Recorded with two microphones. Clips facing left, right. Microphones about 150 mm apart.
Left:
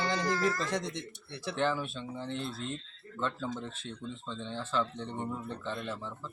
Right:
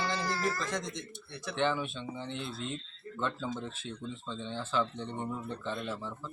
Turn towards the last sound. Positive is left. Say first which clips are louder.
# right 1 dB
turn(degrees=0)  # may be behind; listen again after turning